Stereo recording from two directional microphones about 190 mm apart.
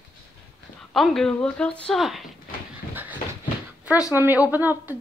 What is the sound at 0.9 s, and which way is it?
A woman's voice, centre (ahead or behind).